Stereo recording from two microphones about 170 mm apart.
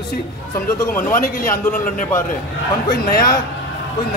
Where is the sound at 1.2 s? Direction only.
55° left (ahead or behind).